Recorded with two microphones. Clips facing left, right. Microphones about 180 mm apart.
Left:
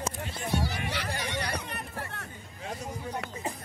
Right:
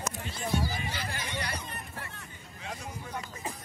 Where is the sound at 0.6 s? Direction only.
70° left (ahead or behind).